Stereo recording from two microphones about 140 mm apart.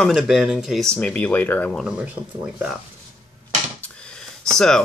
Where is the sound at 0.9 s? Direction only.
10° left (ahead or behind).